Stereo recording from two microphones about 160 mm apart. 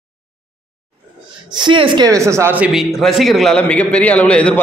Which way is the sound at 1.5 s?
30° right (ahead or behind).